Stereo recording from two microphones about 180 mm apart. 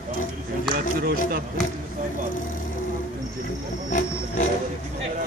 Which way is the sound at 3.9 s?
45° left (ahead or behind).